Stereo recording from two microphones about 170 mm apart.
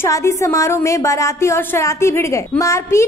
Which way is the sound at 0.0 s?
15° left (ahead or behind).